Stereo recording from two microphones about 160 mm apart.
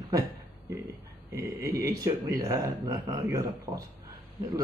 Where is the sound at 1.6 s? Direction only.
20° right (ahead or behind).